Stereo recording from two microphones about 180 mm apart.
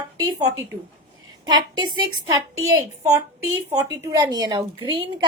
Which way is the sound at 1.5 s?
25° right (ahead or behind).